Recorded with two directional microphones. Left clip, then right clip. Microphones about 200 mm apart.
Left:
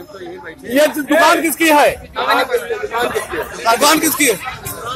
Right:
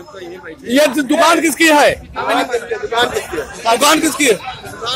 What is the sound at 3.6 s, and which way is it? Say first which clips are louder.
Speech: right 1 dB; 15° right (ahead or behind).